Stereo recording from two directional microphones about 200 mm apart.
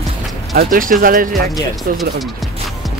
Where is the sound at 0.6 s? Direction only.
45° right (ahead or behind).